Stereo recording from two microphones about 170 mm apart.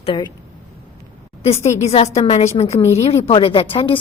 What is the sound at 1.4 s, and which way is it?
A woman's voice, 40° left (ahead or behind).